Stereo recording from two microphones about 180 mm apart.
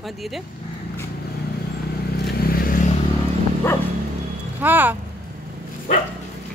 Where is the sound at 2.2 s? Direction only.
55° left (ahead or behind).